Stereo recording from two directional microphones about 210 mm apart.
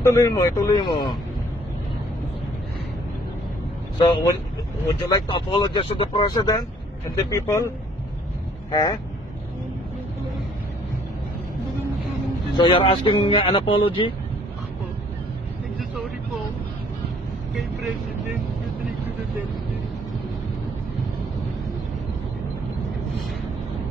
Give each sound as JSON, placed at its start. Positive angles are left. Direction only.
{"t": 0.0, "sound": "speech", "side_deg": 15}
{"t": 4.0, "sound": "speech", "side_deg": 20}
{"t": 12.5, "sound": "speech", "side_deg": 25}